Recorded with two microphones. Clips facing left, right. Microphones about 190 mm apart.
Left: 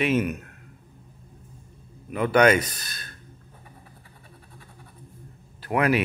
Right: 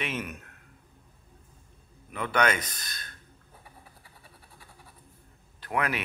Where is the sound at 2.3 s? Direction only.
10° left (ahead or behind).